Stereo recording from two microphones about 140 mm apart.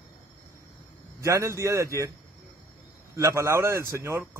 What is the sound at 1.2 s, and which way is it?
Speech, 20° right (ahead or behind).